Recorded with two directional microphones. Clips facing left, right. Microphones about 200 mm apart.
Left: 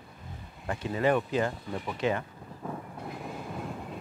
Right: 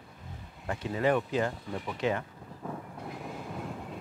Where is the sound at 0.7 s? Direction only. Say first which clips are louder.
Left 1 dB; 15° left (ahead or behind).